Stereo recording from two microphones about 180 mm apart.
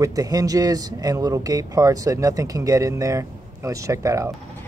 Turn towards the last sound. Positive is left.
turn(degrees=-15)  # may be behind; listen again after turning